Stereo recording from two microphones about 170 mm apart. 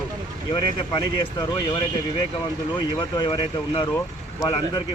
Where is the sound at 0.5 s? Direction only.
25° left (ahead or behind).